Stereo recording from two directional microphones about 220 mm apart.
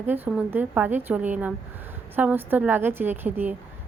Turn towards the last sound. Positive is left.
turn(degrees=-10)  # may be behind; listen again after turning